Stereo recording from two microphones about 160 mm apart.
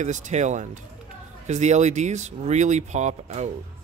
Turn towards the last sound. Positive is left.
turn(degrees=-45)  # may be behind; listen again after turning